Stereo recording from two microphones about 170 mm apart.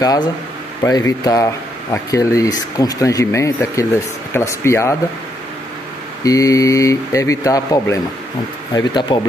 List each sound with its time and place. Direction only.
0.0 s speech: 20° left (ahead or behind)
6.2 s speech: 20° left (ahead or behind)